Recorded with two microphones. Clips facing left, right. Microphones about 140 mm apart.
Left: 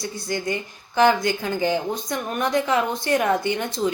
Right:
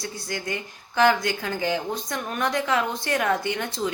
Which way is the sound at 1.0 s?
15° left (ahead or behind).